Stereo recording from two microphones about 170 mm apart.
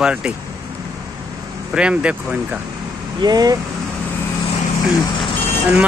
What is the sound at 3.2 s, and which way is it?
Speech, 20° right (ahead or behind).